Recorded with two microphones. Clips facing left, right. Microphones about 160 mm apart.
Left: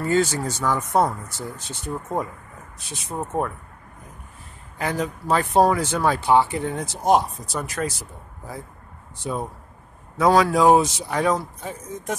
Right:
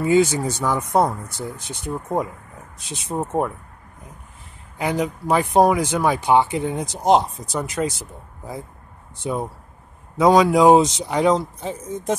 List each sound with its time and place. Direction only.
0.0 s speech: 15° right (ahead or behind)
4.7 s speech: 15° right (ahead or behind)
9.2 s speech: 20° right (ahead or behind)